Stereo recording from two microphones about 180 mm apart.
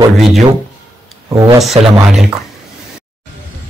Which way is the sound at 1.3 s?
20° right (ahead or behind).